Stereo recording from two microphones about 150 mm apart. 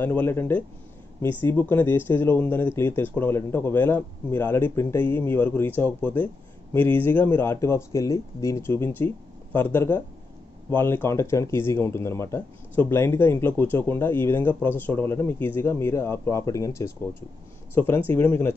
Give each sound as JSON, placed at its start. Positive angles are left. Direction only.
{"t": 0.0, "sound": "speech", "side_deg": 15}